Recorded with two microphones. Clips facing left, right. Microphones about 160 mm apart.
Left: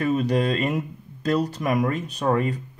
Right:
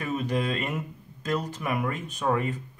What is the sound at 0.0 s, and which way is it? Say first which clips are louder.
Speech: left 6 dB; 35° left (ahead or behind).